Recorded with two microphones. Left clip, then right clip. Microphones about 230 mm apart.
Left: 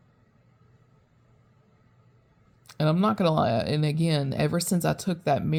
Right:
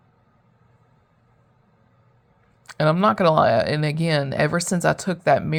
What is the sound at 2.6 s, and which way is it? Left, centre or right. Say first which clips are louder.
Speech: right 7 dB; centre.